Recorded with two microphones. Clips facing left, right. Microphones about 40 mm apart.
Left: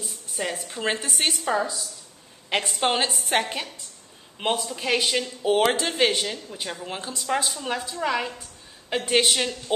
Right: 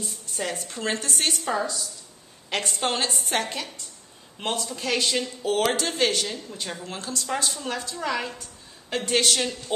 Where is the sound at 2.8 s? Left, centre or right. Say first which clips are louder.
Left 3 dB; left.